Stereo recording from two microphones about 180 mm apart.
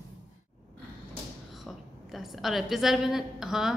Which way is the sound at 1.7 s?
Centre (ahead or behind).